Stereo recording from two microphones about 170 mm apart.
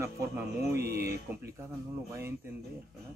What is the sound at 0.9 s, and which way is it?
Speech, 65° right (ahead or behind).